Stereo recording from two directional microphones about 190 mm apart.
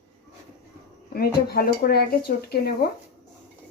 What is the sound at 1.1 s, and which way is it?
Speech, 55° left (ahead or behind).